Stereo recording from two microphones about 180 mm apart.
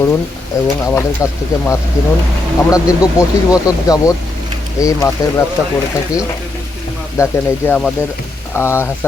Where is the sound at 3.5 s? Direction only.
20° left (ahead or behind).